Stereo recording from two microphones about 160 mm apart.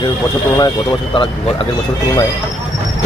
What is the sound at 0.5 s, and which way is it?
Speech, 25° left (ahead or behind).